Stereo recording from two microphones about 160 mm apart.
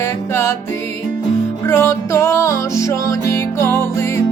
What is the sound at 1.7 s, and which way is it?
Music, 15° left (ahead or behind).